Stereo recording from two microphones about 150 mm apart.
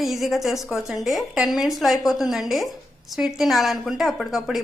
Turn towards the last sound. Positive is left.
turn(degrees=0)  # may be behind; listen again after turning